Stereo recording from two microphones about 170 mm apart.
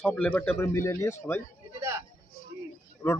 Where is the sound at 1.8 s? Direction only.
15° right (ahead or behind).